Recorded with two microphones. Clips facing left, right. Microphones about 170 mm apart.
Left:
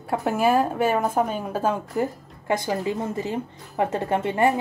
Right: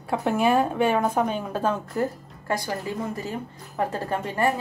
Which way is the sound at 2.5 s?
20° left (ahead or behind).